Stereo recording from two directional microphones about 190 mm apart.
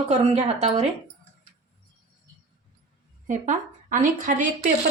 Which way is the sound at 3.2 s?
40° right (ahead or behind).